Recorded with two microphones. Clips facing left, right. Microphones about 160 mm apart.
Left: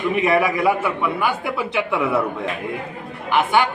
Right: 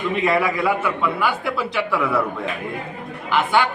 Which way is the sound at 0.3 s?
15° left (ahead or behind).